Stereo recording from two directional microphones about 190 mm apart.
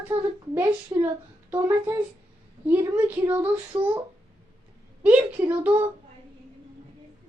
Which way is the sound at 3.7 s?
25° right (ahead or behind).